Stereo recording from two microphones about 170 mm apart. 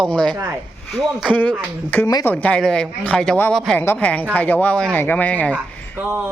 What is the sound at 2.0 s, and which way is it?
Speech, 20° left (ahead or behind).